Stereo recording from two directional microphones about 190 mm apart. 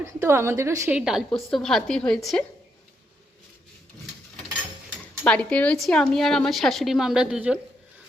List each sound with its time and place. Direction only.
0.0 s a woman's voice: 15° right (ahead or behind); by 2.4 s 5° left (ahead or behind)
5.2 s a woman's voice: 5° left (ahead or behind)